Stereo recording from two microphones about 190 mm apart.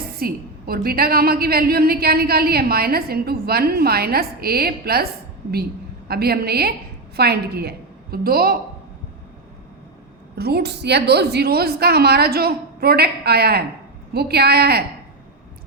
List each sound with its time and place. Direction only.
0.2 s a woman's voice: 55° right (ahead or behind)
6.1 s a woman's voice: 55° right (ahead or behind)
10.3 s a woman's voice: 60° right (ahead or behind)